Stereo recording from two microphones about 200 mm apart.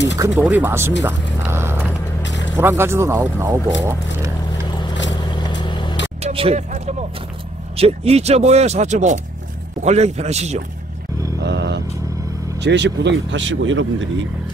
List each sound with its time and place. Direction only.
0.3 s speech: 10° right (ahead or behind)
1.0 s a sound: 10° right (ahead or behind)
2.2 s vehicle: 65° left (ahead or behind)
2.5 s speech: 15° right (ahead or behind)
5.3 s vehicle: 20° left (ahead or behind)
6.2 s a sound: 30° right (ahead or behind)
7.7 s speech: 30° right (ahead or behind)
11.4 s vehicle: 60° right (ahead or behind)
12.5 s speech: 60° right (ahead or behind)